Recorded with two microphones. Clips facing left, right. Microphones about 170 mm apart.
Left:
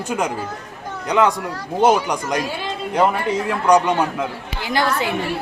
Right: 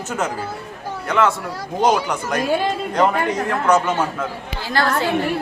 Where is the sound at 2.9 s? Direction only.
10° left (ahead or behind).